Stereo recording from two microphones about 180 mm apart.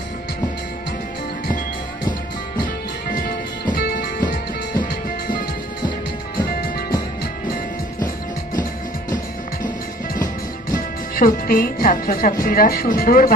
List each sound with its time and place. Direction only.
2.6 s music: 50° left (ahead or behind)
6.4 s music: 60° left (ahead or behind)
10.7 s speech: 50° left (ahead or behind)